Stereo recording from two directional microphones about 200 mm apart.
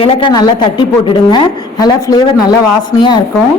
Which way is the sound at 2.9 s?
20° left (ahead or behind).